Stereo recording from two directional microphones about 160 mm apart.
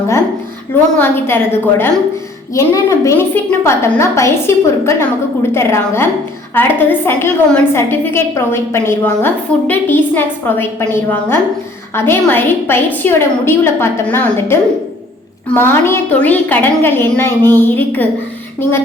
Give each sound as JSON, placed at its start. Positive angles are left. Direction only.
{"t": 0.9, "sound": "a woman's voice", "side_deg": 15}